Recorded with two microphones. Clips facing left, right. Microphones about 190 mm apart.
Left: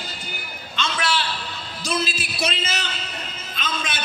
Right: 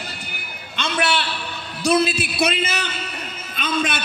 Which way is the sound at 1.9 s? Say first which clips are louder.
Right 8 dB; 60° right (ahead or behind).